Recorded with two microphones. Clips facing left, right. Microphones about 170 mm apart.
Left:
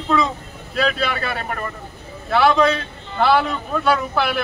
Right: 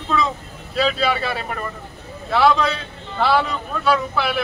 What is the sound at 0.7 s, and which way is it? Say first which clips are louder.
Speech: right 1 dB; centre (ahead or behind).